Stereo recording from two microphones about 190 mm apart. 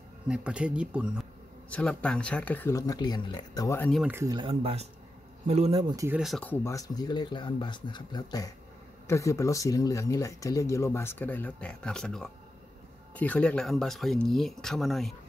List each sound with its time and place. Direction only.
0.3 s speech: 5° right (ahead or behind)
1.7 s speech: 5° left (ahead or behind)
4.0 s speech: 15° right (ahead or behind)
4.5 s speech: 30° right (ahead or behind)
5.9 s speech: 10° right (ahead or behind)
6.2 s speech: 5° left (ahead or behind)